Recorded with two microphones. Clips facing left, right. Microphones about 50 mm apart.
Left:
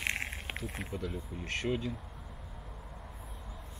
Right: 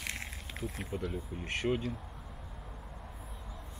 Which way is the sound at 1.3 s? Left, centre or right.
Centre.